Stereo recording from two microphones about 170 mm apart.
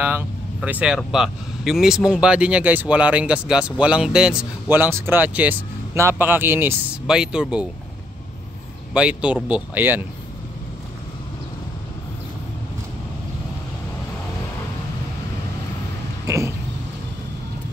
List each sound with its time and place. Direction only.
0.0 s speech: 10° right (ahead or behind)
8.9 s speech: 5° right (ahead or behind)
16.3 s a sound: 15° right (ahead or behind)